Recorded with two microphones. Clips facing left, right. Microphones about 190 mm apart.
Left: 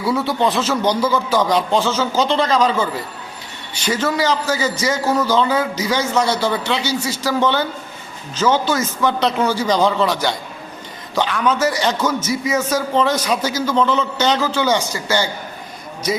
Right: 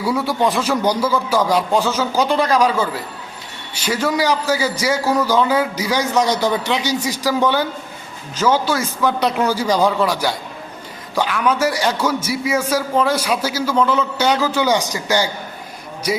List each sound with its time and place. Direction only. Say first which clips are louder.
0.0 s a man's voice: even; 10° right (ahead or behind)